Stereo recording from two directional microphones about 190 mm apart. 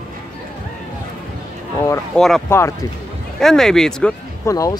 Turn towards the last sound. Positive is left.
turn(degrees=15)  # may be behind; listen again after turning